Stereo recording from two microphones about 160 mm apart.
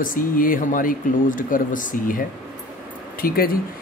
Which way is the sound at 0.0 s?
60° left (ahead or behind).